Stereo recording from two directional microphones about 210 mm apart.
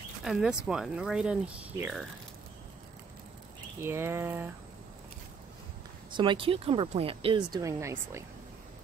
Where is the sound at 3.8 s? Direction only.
10° right (ahead or behind).